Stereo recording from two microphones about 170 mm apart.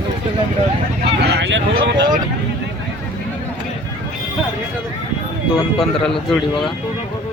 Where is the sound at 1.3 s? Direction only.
90° right.